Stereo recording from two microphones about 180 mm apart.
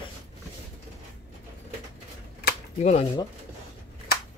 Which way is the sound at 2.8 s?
35° left (ahead or behind).